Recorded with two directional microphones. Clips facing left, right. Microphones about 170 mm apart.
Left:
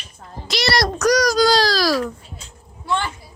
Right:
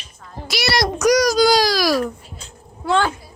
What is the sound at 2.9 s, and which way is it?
Speech, 90° right.